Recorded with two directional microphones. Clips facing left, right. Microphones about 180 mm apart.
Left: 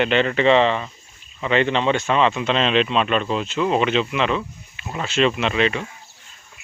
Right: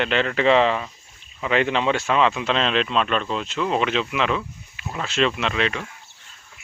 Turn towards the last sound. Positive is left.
turn(degrees=0)  # may be behind; listen again after turning